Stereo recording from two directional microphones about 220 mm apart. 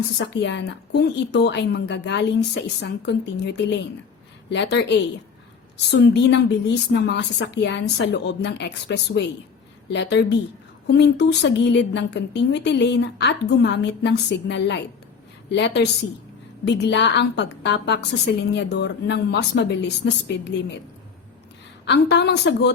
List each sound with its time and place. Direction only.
0.2 s a woman's voice: 55° left (ahead or behind)
21.8 s a woman's voice: 50° left (ahead or behind)